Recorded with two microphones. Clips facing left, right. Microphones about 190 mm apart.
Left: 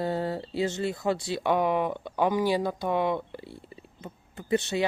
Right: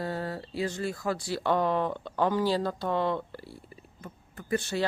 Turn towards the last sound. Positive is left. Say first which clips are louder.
# left 3 dB
turn(degrees=20)  # may be behind; listen again after turning